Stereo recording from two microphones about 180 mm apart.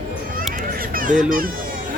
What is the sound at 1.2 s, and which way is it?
Speech, 50° right (ahead or behind).